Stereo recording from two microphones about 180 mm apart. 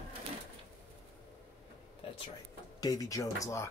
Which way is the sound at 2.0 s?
30° left (ahead or behind).